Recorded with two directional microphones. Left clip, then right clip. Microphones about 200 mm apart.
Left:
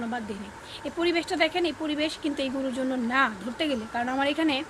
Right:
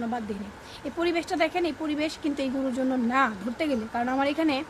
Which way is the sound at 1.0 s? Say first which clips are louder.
Left 1 dB; 15° right (ahead or behind).